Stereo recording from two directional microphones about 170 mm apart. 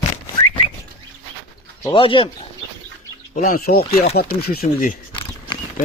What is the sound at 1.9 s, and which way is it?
Speech, 30° left (ahead or behind).